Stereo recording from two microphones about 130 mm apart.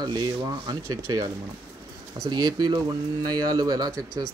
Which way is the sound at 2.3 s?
35° right (ahead or behind).